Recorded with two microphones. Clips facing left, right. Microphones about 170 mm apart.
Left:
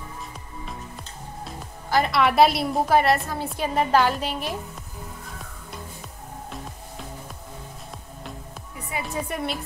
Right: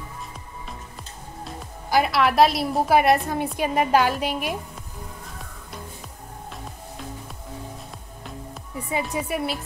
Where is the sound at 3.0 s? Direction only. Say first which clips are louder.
Right 2 dB; 15° right (ahead or behind).